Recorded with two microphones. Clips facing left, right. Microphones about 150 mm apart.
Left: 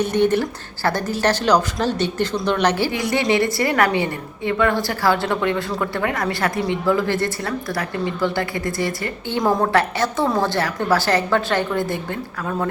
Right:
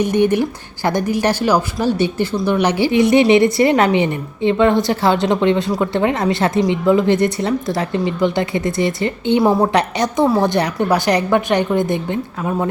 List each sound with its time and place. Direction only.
0.0 s a woman's voice: 10° right (ahead or behind)